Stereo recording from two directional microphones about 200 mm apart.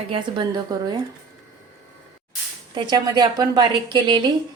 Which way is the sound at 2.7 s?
20° right (ahead or behind).